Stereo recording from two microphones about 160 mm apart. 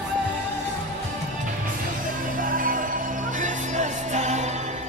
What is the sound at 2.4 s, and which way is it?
Music, 60° right (ahead or behind).